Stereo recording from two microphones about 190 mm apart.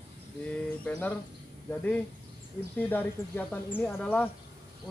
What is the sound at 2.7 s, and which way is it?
Speech, 10° left (ahead or behind).